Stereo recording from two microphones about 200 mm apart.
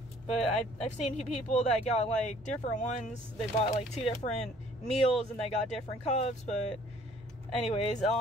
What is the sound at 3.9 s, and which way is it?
Speech, 30° left (ahead or behind).